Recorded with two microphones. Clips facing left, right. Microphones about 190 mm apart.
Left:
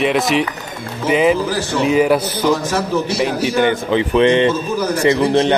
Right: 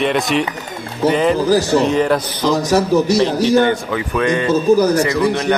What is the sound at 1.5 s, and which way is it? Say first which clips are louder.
Speech: right 6 dB; 40° right (ahead or behind).